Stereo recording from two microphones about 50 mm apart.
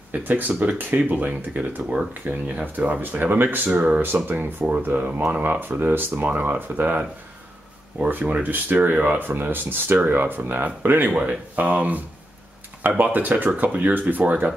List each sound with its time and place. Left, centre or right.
0.1 s speech: right